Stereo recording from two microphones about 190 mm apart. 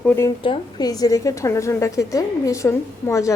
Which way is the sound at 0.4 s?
25° left (ahead or behind).